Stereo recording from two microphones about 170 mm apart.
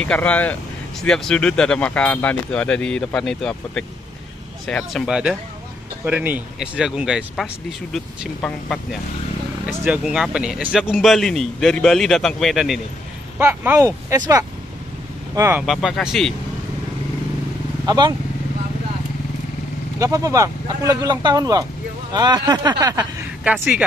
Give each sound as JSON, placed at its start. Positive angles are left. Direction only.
{"t": 0.0, "sound": "a man's voice", "side_deg": 10}
{"t": 9.8, "sound": "a man's voice", "side_deg": -5}
{"t": 13.4, "sound": "speech", "side_deg": -15}
{"t": 15.6, "sound": "a man's voice", "side_deg": 0}
{"t": 17.8, "sound": "speech", "side_deg": -25}
{"t": 20.0, "sound": "speech", "side_deg": -20}
{"t": 23.4, "sound": "a man's voice", "side_deg": -5}